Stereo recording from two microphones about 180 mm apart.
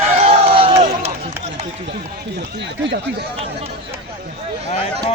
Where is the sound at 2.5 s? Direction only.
75° right (ahead or behind).